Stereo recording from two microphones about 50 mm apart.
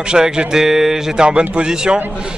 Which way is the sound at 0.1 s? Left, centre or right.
Centre.